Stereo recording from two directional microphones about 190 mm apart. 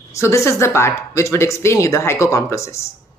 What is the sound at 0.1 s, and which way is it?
Speech, 15° left (ahead or behind).